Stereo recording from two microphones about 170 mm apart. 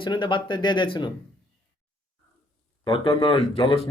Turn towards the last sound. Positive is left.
turn(degrees=35)  # may be behind; listen again after turning